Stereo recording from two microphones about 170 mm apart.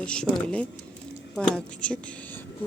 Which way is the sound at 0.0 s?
5° left (ahead or behind).